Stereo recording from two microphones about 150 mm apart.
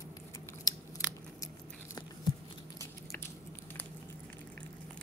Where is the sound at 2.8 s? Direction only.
15° left (ahead or behind).